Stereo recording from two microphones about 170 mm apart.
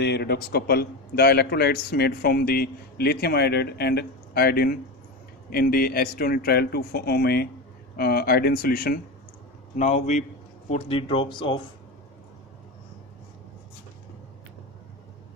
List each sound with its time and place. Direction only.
0.0 s a man's voice: 75° left (ahead or behind)
9.8 s a man's voice: 45° left (ahead or behind)
10.7 s speech: 35° left (ahead or behind)